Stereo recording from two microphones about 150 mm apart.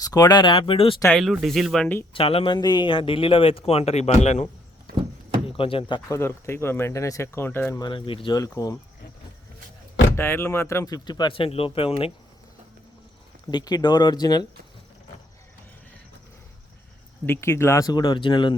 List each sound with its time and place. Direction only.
0.0 s a man's voice: 25° left (ahead or behind)
1.1 s speech: centre (ahead or behind)
2.1 s a man's voice: 40° left (ahead or behind)
5.5 s a man's voice: 35° left (ahead or behind)
6.1 s speech: 20° left (ahead or behind)
7.8 s a man's voice: 30° left (ahead or behind)
8.4 s speech: 20° left (ahead or behind)
10.2 s speech: 15° left (ahead or behind); by 12.1 s 40° left (ahead or behind)
13.5 s speech: 25° left (ahead or behind)
17.2 s speech: 15° left (ahead or behind); by 18.5 s 30° left (ahead or behind)